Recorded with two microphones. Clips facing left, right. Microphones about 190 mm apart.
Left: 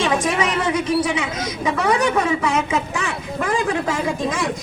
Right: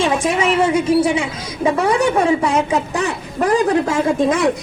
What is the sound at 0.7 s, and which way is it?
A woman's voice, 25° right (ahead or behind).